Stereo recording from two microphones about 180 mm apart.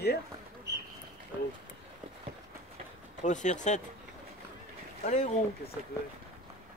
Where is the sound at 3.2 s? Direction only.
40° left (ahead or behind).